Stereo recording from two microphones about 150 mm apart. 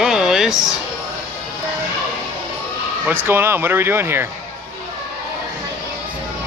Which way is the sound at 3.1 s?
15° right (ahead or behind).